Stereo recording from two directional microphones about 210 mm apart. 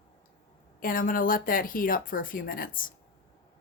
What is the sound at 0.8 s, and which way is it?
Speech, 40° left (ahead or behind).